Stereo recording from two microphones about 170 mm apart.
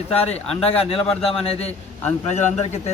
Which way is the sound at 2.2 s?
45° left (ahead or behind).